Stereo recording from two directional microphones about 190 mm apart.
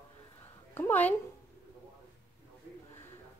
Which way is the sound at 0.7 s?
10° left (ahead or behind).